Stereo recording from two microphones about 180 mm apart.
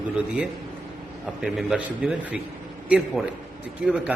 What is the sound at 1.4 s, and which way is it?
A man's voice, 5° right (ahead or behind).